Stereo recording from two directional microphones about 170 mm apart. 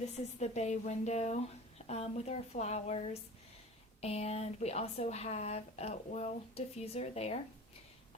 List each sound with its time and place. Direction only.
0.0 s speech: 40° left (ahead or behind)